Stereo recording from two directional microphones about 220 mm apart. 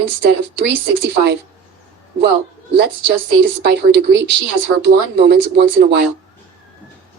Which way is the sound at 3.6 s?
50° right (ahead or behind).